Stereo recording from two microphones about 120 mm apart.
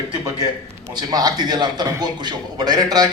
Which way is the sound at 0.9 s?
30° right (ahead or behind).